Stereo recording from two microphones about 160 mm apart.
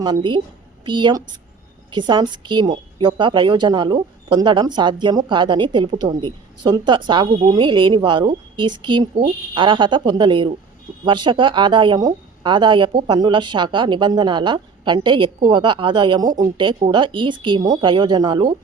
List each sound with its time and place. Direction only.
0.0 s a woman's voice: 30° right (ahead or behind)